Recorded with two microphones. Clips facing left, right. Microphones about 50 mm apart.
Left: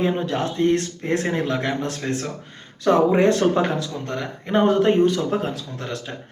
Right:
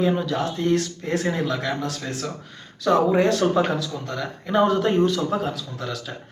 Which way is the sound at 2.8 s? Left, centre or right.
Left.